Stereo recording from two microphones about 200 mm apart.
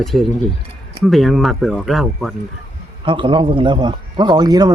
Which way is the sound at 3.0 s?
25° right (ahead or behind).